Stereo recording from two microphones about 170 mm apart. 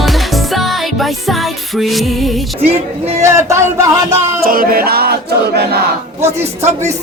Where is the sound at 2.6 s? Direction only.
35° right (ahead or behind).